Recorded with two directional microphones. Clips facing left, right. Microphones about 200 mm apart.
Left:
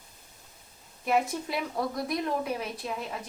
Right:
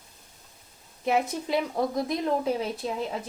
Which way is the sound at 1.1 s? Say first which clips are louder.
Right 2 dB; 20° right (ahead or behind).